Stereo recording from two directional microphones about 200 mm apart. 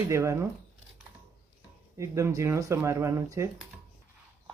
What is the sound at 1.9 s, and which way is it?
Speech, 15° right (ahead or behind).